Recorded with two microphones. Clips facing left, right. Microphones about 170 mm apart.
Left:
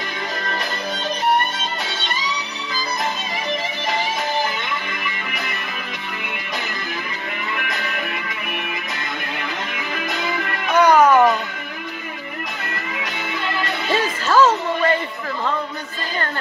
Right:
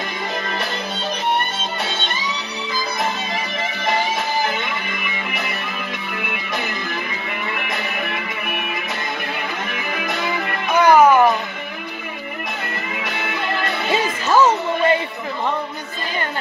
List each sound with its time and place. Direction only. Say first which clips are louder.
10.7 s music: right 1 dB; 10° right (ahead or behind)
13.8 s music: even; 15° right (ahead or behind)